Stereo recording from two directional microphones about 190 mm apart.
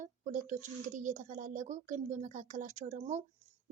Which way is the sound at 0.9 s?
40° right (ahead or behind).